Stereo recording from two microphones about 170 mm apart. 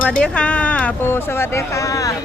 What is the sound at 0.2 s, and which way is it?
Speech, 5° left (ahead or behind).